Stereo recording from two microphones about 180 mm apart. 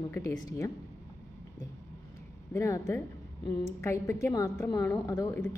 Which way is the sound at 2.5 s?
15° left (ahead or behind).